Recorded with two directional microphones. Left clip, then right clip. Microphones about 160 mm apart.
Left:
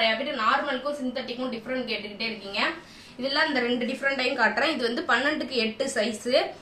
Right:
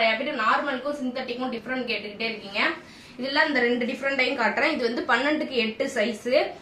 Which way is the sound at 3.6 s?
30° right (ahead or behind).